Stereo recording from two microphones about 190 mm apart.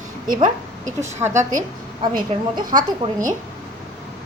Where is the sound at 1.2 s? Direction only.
15° right (ahead or behind).